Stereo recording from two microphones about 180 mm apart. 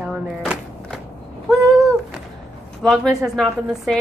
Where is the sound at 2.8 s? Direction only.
Centre (ahead or behind).